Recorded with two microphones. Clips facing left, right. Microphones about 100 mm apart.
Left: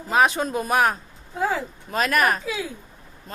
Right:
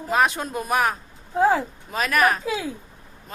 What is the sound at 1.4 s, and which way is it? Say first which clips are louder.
Speech: right 6 dB; 30° right (ahead or behind).